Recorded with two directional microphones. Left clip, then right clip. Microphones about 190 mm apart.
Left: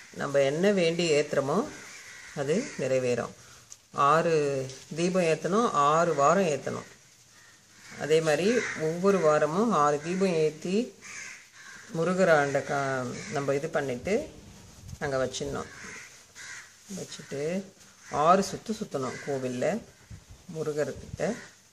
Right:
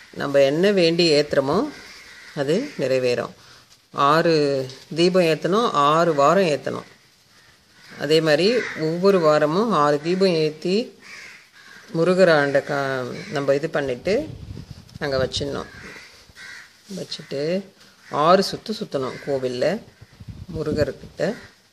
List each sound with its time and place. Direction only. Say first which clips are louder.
0.2 s a man's voice: right 8 dB; 45° right (ahead or behind)
8.0 s a man's voice: right 7 dB; 50° right (ahead or behind)
11.9 s a man's voice: right 7 dB; 45° right (ahead or behind)
17.1 s a man's voice: right 8 dB; 45° right (ahead or behind)